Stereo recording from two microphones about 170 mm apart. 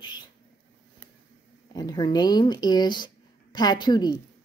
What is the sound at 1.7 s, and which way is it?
Speech, 20° left (ahead or behind).